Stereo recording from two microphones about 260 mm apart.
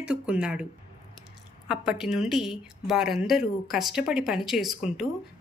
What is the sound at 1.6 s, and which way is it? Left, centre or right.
Speech, centre.